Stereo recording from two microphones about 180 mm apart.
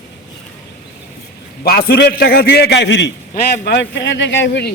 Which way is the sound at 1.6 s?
60° left (ahead or behind).